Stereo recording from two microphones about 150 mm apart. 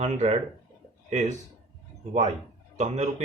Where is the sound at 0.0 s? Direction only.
45° right (ahead or behind).